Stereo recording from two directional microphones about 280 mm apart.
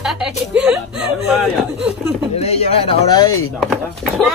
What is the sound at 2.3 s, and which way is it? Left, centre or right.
Speech, left.